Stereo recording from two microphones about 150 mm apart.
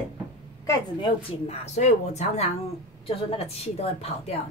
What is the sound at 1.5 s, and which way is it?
A woman's voice, 50° left (ahead or behind).